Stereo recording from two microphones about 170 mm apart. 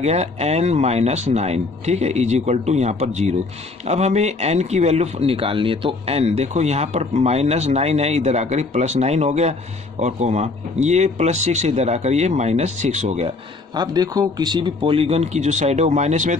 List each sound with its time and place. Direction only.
0.0 s a man's voice: 40° right (ahead or behind)
13.7 s a man's voice: 20° right (ahead or behind); by 16.3 s 45° right (ahead or behind)